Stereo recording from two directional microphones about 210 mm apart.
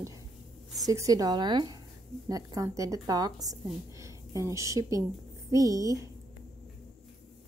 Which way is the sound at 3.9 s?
15° right (ahead or behind).